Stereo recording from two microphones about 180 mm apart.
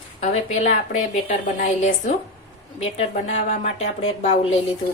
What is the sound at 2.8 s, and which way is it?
A woman's voice, 35° left (ahead or behind).